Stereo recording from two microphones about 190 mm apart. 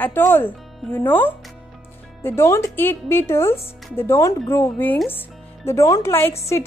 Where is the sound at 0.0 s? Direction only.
10° left (ahead or behind).